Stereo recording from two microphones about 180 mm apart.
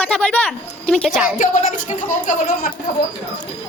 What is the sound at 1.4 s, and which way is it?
Speech, 45° left (ahead or behind).